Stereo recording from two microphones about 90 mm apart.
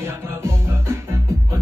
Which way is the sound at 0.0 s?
30° right (ahead or behind).